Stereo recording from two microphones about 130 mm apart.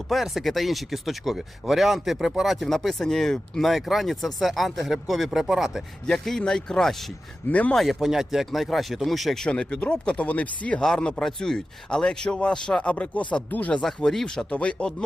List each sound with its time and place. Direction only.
0.1 s speech: centre (ahead or behind)